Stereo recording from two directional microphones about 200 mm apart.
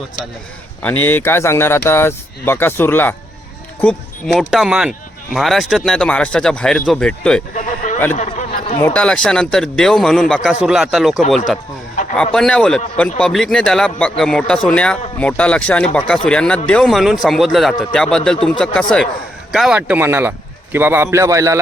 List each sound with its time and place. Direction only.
0.8 s speech: 10° left (ahead or behind)
4.4 s speech: 5° right (ahead or behind)
7.5 s a sound: 40° left (ahead or behind)
8.8 s speech: 5° left (ahead or behind)
12.1 s speech: 5° left (ahead or behind); by 21.6 s 15° right (ahead or behind)